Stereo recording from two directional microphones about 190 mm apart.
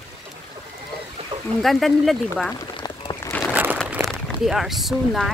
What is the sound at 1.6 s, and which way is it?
Speech, centre (ahead or behind).